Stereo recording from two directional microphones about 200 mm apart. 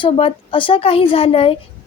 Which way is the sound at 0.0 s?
25° left (ahead or behind).